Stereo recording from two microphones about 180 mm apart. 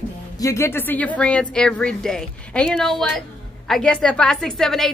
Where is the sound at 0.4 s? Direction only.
15° left (ahead or behind).